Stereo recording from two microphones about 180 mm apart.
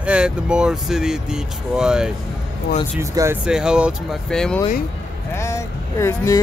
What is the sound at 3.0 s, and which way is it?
Speech, 15° right (ahead or behind).